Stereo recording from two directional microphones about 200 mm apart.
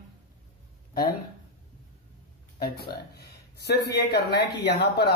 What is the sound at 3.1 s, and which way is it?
Speech, 55° left (ahead or behind).